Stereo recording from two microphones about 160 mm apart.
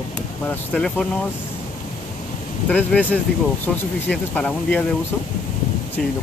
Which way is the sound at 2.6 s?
10° left (ahead or behind).